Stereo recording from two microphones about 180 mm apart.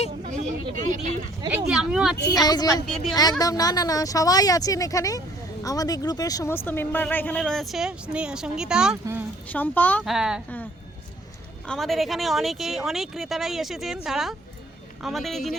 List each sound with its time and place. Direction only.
0.3 s speech: 40° right (ahead or behind)
1.5 s speech: 5° right (ahead or behind)
2.3 s speech: 20° left (ahead or behind)
2.8 s speech: centre (ahead or behind)
3.2 s speech: 20° left (ahead or behind); by 9.0 s 5° right (ahead or behind)
9.5 s speech: 10° left (ahead or behind)
10.0 s speech: 5° right (ahead or behind)
11.7 s speech: centre (ahead or behind)